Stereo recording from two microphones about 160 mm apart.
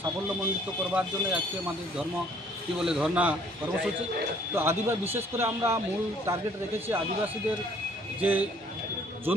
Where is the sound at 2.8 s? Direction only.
5° right (ahead or behind).